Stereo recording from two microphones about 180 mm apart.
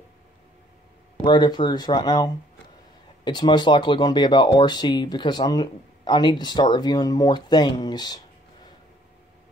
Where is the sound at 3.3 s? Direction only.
25° left (ahead or behind).